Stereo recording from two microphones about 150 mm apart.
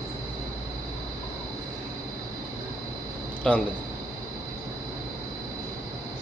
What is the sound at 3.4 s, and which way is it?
Speech, 5° left (ahead or behind).